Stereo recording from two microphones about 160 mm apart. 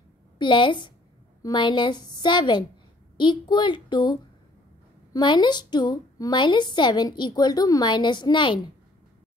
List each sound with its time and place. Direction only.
0.4 s a woman's voice: 30° left (ahead or behind)